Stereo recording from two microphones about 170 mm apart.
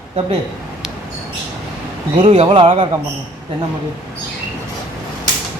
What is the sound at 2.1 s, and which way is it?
Speech, 35° right (ahead or behind).